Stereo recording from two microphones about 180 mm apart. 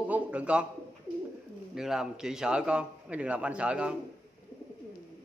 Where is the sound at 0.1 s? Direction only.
10° right (ahead or behind).